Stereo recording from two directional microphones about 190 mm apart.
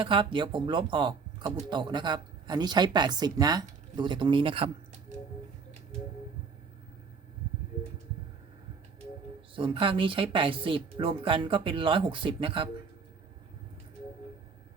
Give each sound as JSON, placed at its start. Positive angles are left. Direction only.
{"t": 0.0, "sound": "speech", "side_deg": -25}
{"t": 9.6, "sound": "speech", "side_deg": -25}